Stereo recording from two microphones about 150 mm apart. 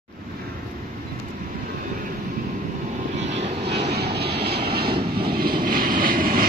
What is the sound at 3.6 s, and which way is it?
Vehicle, 90° right.